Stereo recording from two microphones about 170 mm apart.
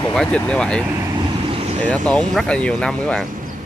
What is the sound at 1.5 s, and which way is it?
Vehicle, 40° right (ahead or behind).